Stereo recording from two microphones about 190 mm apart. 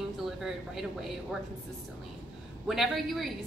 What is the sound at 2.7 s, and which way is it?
Speech, centre (ahead or behind).